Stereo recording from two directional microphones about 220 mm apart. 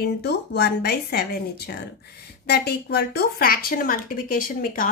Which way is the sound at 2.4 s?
45° left (ahead or behind).